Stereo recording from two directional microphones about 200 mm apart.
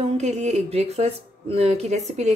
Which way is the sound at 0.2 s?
35° right (ahead or behind).